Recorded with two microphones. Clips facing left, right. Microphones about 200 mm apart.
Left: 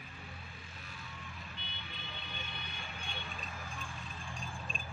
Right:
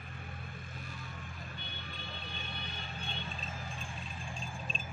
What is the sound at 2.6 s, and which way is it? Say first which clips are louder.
Vehicle: right 3 dB; 30° right (ahead or behind).